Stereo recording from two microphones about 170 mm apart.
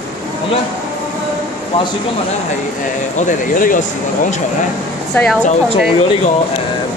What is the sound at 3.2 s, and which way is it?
Speech, 50° left (ahead or behind).